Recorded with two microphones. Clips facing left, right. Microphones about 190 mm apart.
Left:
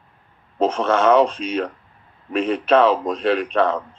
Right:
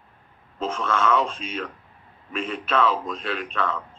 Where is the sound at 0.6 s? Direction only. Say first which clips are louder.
Left 7 dB; 40° left (ahead or behind).